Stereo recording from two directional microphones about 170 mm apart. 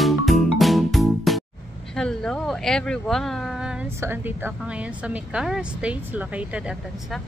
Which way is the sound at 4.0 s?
15° right (ahead or behind).